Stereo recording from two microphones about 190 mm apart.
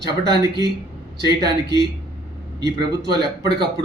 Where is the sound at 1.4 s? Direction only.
60° right (ahead or behind).